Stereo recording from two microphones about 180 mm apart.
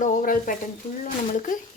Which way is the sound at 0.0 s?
50° left (ahead or behind).